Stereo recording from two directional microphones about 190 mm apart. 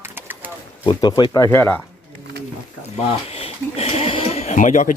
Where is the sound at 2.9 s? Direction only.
30° left (ahead or behind).